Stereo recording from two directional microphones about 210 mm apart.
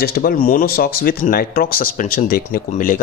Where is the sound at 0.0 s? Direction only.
45° left (ahead or behind).